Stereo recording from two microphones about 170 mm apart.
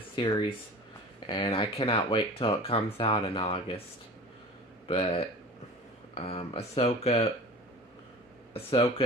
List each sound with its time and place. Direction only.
0.1 s speech: 25° left (ahead or behind)
4.8 s speech: 35° left (ahead or behind)
8.5 s speech: 35° left (ahead or behind)